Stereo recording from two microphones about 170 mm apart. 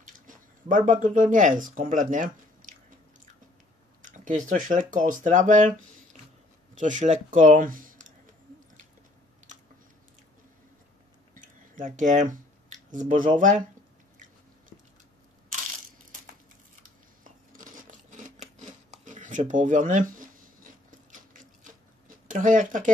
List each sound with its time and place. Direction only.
0.3 s speech: 50° right (ahead or behind)
4.0 s speech: 50° right (ahead or behind)
11.3 s a sound: 50° right (ahead or behind)
17.2 s scissors: 50° right (ahead or behind)